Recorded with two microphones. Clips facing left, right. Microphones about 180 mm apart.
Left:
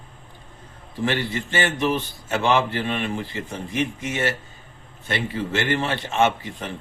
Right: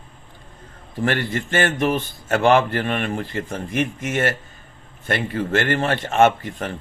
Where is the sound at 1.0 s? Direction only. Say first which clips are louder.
Right 2 dB; 50° right (ahead or behind).